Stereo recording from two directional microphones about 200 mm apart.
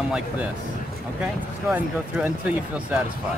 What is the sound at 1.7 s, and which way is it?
Speech, 5° right (ahead or behind).